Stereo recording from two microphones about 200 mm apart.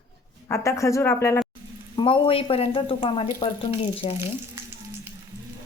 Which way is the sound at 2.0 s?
25° left (ahead or behind).